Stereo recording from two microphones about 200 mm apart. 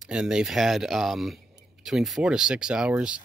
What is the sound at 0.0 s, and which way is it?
Speech, 5° right (ahead or behind).